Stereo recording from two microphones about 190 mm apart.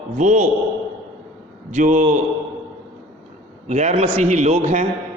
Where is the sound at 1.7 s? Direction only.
40° right (ahead or behind).